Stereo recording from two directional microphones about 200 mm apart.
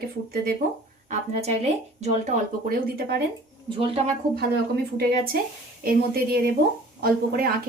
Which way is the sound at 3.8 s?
30° right (ahead or behind).